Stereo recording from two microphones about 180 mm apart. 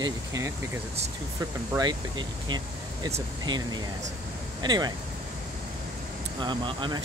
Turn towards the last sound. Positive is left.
turn(degrees=-25)  # may be behind; listen again after turning